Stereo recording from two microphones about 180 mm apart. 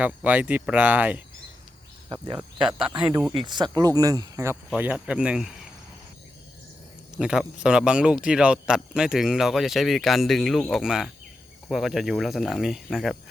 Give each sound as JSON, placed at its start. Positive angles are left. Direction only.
{"t": 0.0, "sound": "speech", "side_deg": -10}
{"t": 2.2, "sound": "speech", "side_deg": -25}
{"t": 2.6, "sound": "speech", "side_deg": -5}
{"t": 3.3, "sound": "speech", "side_deg": -25}
{"t": 4.7, "sound": "speech", "side_deg": -5}
{"t": 7.2, "sound": "speech", "side_deg": -5}